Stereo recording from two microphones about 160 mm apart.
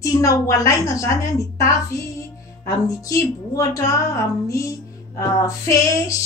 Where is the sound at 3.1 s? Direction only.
20° left (ahead or behind).